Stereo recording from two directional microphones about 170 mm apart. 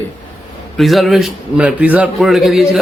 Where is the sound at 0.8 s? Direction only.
Centre (ahead or behind).